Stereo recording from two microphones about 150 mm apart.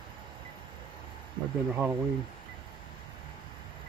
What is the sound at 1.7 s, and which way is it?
Speech, 15° right (ahead or behind).